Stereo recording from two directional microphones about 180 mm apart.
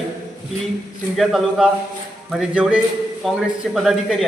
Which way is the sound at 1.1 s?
Centre (ahead or behind).